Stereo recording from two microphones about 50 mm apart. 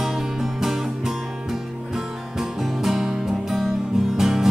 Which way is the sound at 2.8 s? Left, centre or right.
Centre.